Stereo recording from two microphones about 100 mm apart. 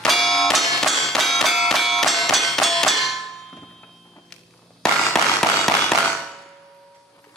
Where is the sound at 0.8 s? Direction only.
Centre (ahead or behind).